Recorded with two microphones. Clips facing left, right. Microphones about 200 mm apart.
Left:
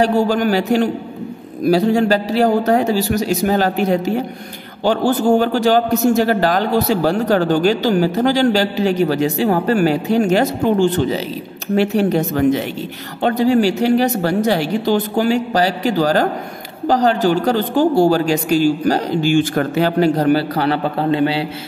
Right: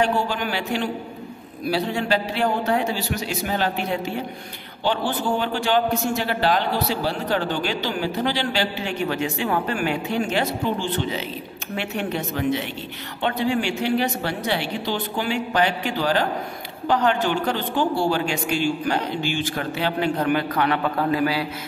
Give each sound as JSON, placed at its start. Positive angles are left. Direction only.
{"t": 0.0, "sound": "a woman's voice", "side_deg": 40}